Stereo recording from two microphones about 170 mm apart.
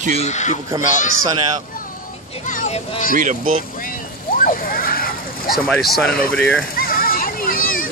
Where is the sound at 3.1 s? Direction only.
50° right (ahead or behind).